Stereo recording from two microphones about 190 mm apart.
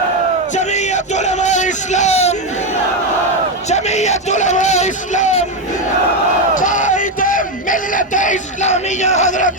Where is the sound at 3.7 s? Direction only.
35° left (ahead or behind).